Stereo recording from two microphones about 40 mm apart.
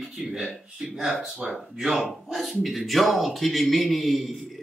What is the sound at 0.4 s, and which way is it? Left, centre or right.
Speech, centre.